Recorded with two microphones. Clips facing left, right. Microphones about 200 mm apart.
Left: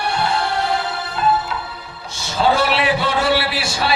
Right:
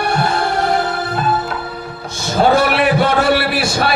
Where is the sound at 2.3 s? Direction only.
50° right (ahead or behind).